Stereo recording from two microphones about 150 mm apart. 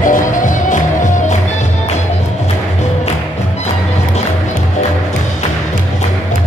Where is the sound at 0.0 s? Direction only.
60° left (ahead or behind).